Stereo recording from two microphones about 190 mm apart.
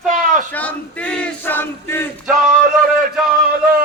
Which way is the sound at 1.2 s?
10° left (ahead or behind).